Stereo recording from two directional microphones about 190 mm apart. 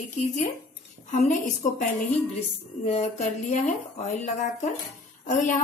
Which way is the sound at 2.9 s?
35° left (ahead or behind).